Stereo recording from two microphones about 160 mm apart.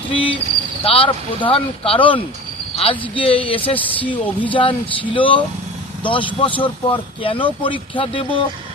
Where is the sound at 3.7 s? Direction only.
10° left (ahead or behind).